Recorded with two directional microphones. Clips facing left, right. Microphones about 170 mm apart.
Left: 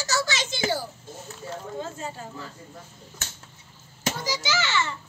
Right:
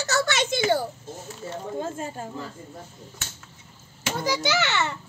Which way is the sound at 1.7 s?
50° right (ahead or behind).